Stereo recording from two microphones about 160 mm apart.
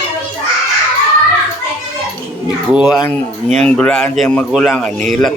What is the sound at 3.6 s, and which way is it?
Speech, 5° left (ahead or behind).